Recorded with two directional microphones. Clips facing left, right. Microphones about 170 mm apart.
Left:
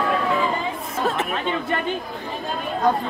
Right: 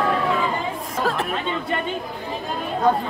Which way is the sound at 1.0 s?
Centre (ahead or behind).